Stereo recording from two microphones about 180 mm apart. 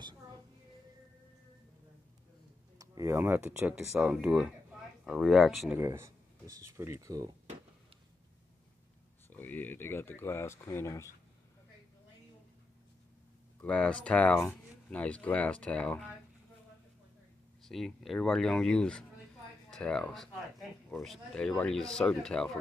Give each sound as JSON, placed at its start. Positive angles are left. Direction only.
{"t": 2.8, "sound": "speech", "side_deg": -20}
{"t": 5.8, "sound": "speech", "side_deg": -15}
{"t": 9.3, "sound": "speech", "side_deg": 10}
{"t": 13.6, "sound": "speech", "side_deg": 5}
{"t": 17.6, "sound": "speech", "side_deg": 0}